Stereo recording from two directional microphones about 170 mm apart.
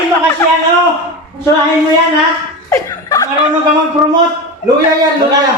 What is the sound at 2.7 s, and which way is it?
Laughter, 20° left (ahead or behind).